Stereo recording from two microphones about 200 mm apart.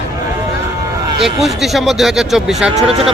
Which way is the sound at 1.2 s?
Centre (ahead or behind).